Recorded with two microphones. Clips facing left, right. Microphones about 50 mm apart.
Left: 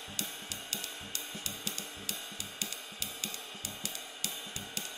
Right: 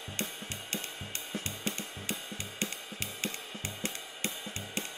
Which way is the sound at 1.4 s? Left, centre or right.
Right.